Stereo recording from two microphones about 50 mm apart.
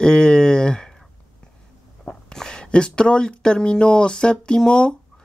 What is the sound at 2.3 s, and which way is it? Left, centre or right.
Speech, centre.